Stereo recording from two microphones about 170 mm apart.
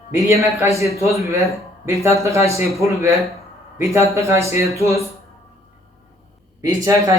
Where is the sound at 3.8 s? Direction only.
15° right (ahead or behind).